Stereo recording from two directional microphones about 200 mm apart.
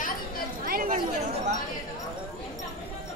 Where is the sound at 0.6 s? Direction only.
45° right (ahead or behind).